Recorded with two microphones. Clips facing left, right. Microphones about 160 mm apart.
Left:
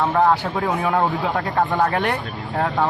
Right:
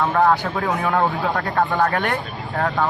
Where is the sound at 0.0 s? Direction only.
15° left (ahead or behind).